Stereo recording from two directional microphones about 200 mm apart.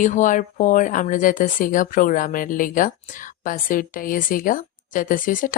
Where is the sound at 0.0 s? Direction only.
40° left (ahead or behind).